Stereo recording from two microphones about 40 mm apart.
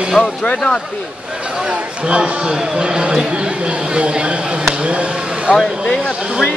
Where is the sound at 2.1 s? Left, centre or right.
Right.